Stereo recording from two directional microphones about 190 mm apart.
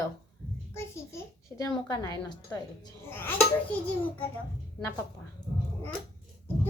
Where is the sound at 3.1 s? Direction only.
10° left (ahead or behind).